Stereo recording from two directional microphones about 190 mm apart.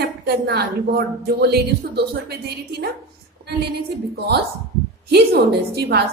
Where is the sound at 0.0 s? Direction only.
55° right (ahead or behind).